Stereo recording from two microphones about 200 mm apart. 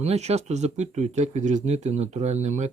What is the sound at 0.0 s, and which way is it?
Speech, 35° right (ahead or behind).